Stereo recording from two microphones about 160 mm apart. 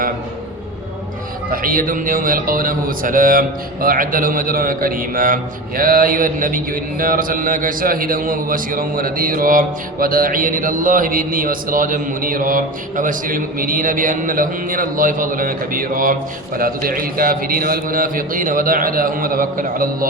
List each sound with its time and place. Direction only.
1.5 s a man's voice: 60° right (ahead or behind)